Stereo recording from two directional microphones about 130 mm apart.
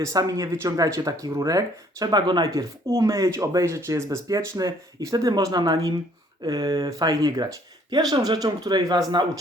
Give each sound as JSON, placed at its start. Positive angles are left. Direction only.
{"t": 0.0, "sound": "speech", "side_deg": -25}